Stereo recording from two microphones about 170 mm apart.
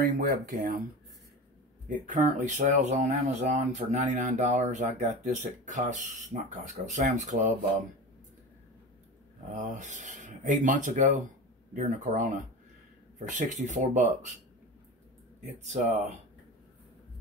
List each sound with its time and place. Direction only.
0.0 s speech: 55° right (ahead or behind)
1.9 s speech: 50° right (ahead or behind)
9.5 s speech: 50° right (ahead or behind)
15.4 s speech: 45° right (ahead or behind)